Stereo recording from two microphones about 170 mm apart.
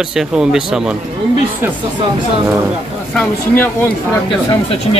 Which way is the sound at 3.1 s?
10° left (ahead or behind).